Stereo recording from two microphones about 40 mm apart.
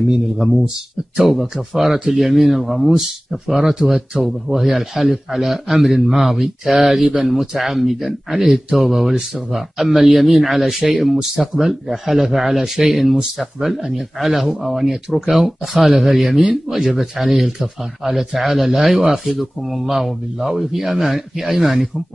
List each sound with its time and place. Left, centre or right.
1.1 s speech: centre
14.9 s speech: centre
15.3 s speech: centre